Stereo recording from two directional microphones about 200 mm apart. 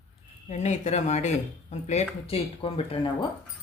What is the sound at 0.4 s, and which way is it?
Speech, 35° left (ahead or behind).